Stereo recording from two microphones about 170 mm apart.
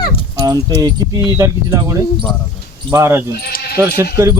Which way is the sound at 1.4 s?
20° right (ahead or behind).